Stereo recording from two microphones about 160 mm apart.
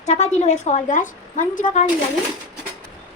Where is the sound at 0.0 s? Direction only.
45° left (ahead or behind).